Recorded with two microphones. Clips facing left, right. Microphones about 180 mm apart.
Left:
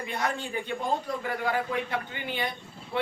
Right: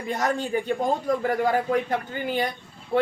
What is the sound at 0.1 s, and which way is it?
Speech, 40° right (ahead or behind).